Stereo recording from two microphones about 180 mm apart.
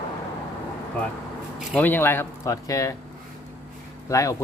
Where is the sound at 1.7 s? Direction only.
10° left (ahead or behind).